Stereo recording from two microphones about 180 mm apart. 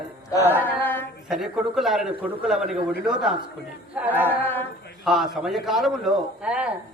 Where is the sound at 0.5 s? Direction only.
10° left (ahead or behind).